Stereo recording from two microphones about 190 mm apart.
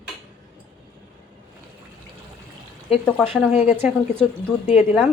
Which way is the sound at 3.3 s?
5° right (ahead or behind).